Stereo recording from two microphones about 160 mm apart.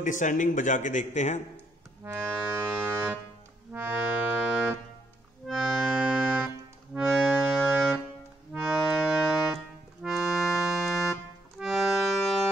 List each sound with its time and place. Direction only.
0.0 s a man's voice: 55° left (ahead or behind)
2.2 s music: 10° right (ahead or behind)
3.7 s accordion: 10° right (ahead or behind)